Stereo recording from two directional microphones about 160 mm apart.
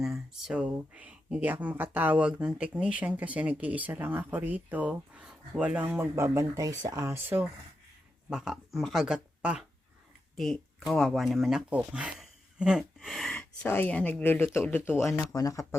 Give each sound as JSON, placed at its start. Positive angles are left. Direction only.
{"t": 0.0, "sound": "speech", "side_deg": -5}